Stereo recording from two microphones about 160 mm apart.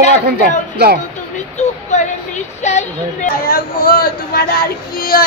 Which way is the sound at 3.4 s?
65° left (ahead or behind).